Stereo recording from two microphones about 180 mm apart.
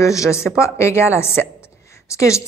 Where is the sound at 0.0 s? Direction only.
15° left (ahead or behind).